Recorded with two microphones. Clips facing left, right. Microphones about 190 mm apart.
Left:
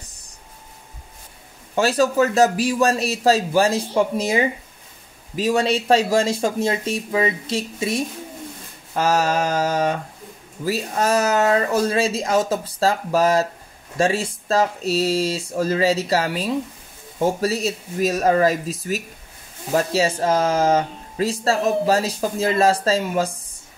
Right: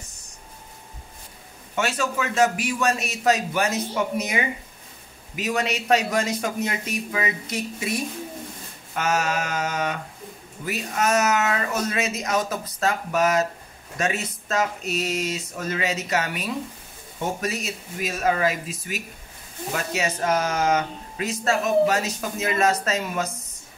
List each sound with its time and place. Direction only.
1.8 s speech: 35° left (ahead or behind)